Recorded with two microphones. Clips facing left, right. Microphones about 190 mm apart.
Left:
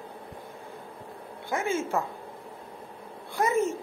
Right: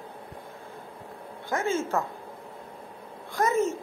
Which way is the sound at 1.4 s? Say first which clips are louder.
Right 1 dB; 15° left (ahead or behind).